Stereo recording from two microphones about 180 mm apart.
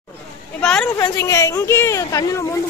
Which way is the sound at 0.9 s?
15° left (ahead or behind).